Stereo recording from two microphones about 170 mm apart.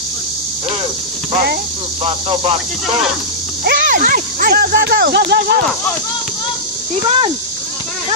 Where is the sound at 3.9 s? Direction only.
50° right (ahead or behind); by 5.3 s 75° right (ahead or behind).